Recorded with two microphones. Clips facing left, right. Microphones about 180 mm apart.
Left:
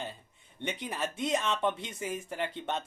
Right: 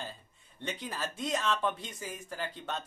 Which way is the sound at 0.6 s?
20° left (ahead or behind).